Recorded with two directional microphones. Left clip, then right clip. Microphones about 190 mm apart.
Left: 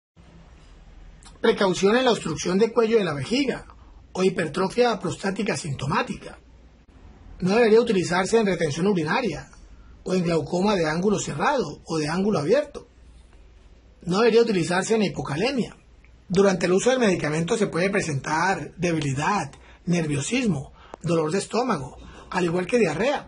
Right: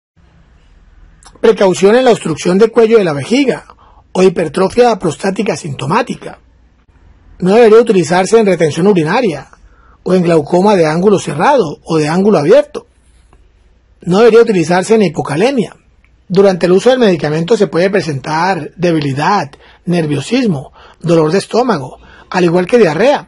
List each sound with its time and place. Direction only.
1.2 s speech: 35° right (ahead or behind)
7.3 s speech: 35° right (ahead or behind)
14.1 s speech: 35° right (ahead or behind)